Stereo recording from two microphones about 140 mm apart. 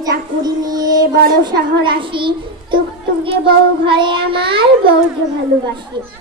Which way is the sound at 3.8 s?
35° right (ahead or behind).